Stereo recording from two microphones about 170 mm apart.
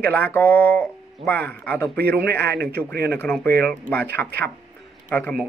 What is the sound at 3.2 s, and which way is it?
Speech, 10° left (ahead or behind).